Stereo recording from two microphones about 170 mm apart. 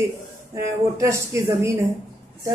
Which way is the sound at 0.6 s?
20° right (ahead or behind).